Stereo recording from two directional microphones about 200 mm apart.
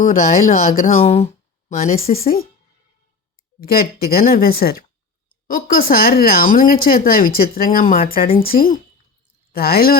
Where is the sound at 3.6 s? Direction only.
50° left (ahead or behind).